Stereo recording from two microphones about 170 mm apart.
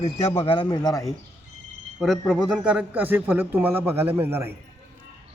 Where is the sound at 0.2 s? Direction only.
15° left (ahead or behind).